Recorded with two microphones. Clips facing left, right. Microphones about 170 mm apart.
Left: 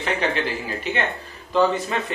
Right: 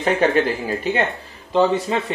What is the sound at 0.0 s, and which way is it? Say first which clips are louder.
Speech: right 6 dB; 45° right (ahead or behind).